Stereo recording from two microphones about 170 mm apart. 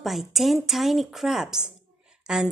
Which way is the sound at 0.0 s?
Centre (ahead or behind).